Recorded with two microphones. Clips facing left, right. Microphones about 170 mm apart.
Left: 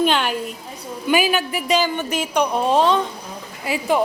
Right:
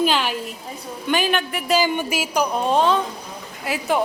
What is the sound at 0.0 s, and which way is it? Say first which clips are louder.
A woman's voice: left 2 dB; centre (ahead or behind).